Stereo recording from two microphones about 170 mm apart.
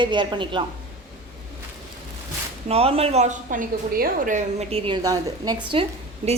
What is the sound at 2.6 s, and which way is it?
A woman's voice, 35° right (ahead or behind).